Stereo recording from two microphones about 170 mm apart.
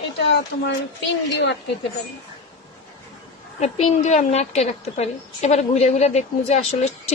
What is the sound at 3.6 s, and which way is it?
A woman's voice, 40° left (ahead or behind).